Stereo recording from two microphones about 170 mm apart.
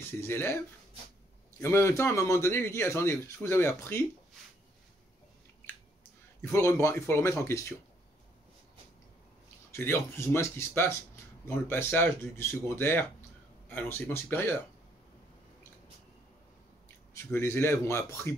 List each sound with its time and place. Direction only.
0.2 s speech: 15° left (ahead or behind)
1.6 s speech: 15° left (ahead or behind)
6.4 s speech: 15° left (ahead or behind)
9.7 s speech: 15° left (ahead or behind)
17.2 s speech: 15° left (ahead or behind)